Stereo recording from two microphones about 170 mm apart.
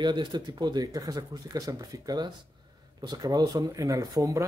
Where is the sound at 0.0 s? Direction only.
25° right (ahead or behind).